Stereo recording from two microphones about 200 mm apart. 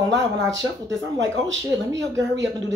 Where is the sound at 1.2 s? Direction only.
65° right (ahead or behind).